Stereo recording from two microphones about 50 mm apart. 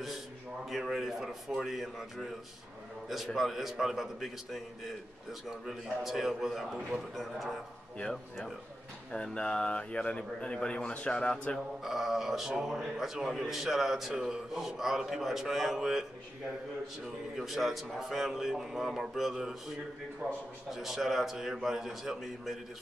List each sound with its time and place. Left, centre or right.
0.7 s a man's voice: centre
3.3 s a man's voice: centre
9.1 s a man's voice: centre
11.8 s a man's voice: centre
20.7 s a man's voice: centre